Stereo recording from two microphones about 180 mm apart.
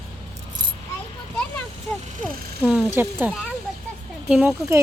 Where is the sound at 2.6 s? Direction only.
10° right (ahead or behind).